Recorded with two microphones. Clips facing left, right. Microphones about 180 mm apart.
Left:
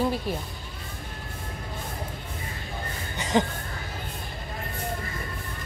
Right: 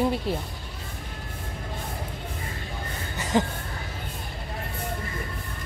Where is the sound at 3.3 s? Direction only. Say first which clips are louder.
Even; 5° right (ahead or behind).